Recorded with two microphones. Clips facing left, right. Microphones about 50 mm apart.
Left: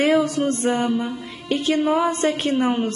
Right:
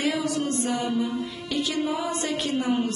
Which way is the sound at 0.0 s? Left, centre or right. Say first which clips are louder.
Left 8 dB; left.